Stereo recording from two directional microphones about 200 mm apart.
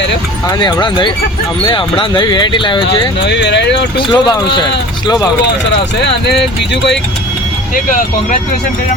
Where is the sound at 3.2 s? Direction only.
60° left (ahead or behind).